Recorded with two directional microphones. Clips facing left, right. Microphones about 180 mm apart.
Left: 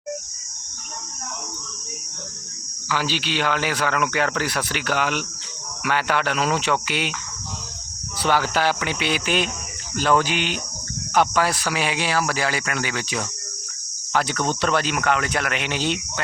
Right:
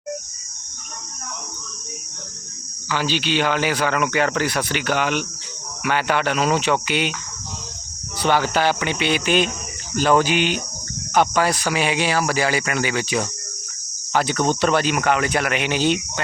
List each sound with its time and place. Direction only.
2.9 s speech: 5° left (ahead or behind)
8.2 s speech: centre (ahead or behind)